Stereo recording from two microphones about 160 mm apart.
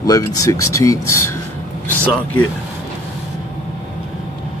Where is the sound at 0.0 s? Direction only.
20° left (ahead or behind).